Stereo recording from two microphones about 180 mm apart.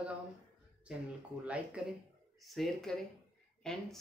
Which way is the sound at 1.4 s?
5° right (ahead or behind).